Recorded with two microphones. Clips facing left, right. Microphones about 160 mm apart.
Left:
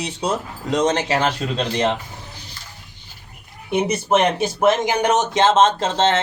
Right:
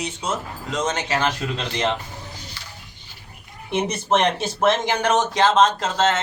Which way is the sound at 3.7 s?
5° left (ahead or behind).